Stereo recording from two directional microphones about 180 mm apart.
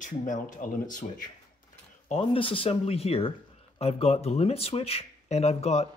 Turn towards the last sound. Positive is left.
turn(degrees=35)  # may be behind; listen again after turning